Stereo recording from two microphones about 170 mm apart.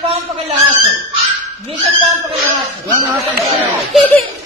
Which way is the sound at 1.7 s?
35° right (ahead or behind).